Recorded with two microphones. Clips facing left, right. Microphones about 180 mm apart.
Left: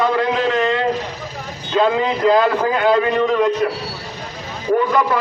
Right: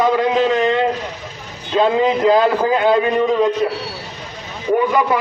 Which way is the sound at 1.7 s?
25° right (ahead or behind).